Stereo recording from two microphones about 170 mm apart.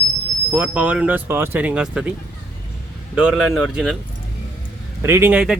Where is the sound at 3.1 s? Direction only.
5° right (ahead or behind).